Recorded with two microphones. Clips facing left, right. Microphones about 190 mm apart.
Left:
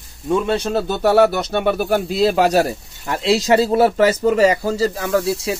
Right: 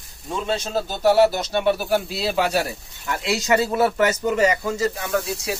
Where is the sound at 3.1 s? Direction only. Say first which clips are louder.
Left 5 dB; 30° left (ahead or behind).